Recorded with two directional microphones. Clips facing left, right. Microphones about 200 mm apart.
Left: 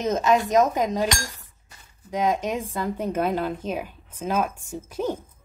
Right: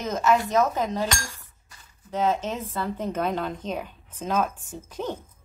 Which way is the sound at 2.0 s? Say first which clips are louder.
Left 1 dB; 15° left (ahead or behind).